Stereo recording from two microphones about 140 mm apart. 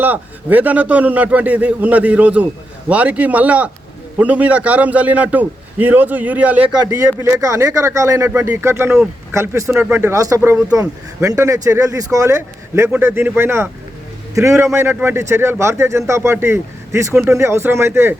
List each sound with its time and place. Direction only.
0.0 s a man's voice: 10° right (ahead or behind)
6.9 s speech: 20° right (ahead or behind)